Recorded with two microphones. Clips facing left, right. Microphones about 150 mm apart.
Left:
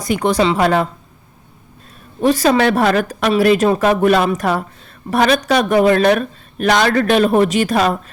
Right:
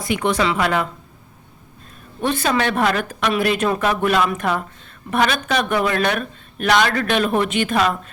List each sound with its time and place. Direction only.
0.0 s speech: 40° left (ahead or behind)
2.3 s speech: 40° left (ahead or behind)